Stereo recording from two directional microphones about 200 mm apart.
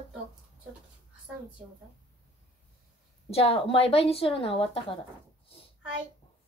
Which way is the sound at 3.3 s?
30° left (ahead or behind).